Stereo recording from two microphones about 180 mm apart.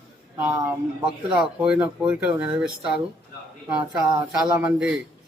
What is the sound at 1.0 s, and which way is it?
Speech, 5° right (ahead or behind).